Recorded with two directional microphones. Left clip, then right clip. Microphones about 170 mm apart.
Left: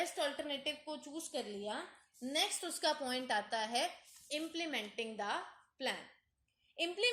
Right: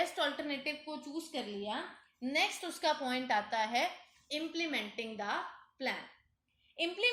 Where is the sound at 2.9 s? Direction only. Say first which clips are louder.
Right 4 dB; 20° left (ahead or behind).